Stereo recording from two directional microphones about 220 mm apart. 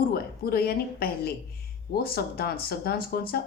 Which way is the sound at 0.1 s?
45° left (ahead or behind).